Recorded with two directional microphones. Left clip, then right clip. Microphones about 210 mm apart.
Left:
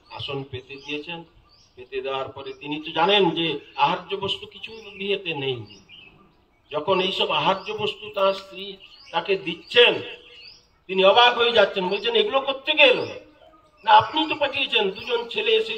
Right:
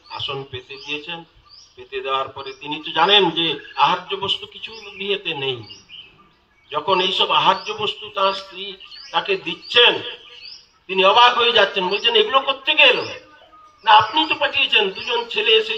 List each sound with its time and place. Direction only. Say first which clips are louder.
0.1 s a man's voice: right 4 dB; 55° left (ahead or behind)
6.7 s a man's voice: right 4 dB; 55° left (ahead or behind)
13.9 s a man's voice: right 2 dB; 55° left (ahead or behind)